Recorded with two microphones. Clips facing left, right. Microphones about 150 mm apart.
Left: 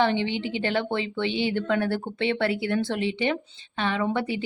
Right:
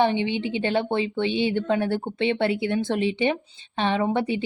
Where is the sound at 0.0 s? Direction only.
20° right (ahead or behind).